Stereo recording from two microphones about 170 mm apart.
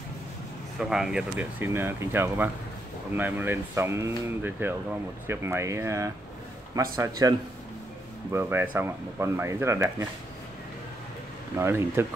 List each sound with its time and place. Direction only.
0.7 s a man's voice: 5° right (ahead or behind)
8.3 s speech: 15° right (ahead or behind)
11.5 s speech: 15° right (ahead or behind)